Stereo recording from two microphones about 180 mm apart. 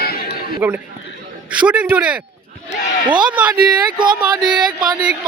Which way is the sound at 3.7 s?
25° right (ahead or behind).